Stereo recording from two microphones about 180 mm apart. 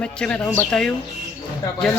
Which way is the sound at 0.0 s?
5° left (ahead or behind).